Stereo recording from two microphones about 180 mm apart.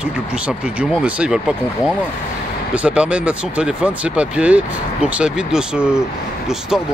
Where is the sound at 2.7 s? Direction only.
5° right (ahead or behind).